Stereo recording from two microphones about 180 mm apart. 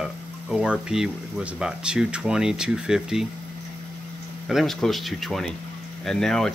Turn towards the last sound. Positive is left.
turn(degrees=5)  # may be behind; listen again after turning